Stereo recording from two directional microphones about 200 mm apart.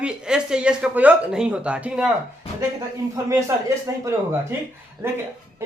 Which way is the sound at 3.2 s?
15° right (ahead or behind).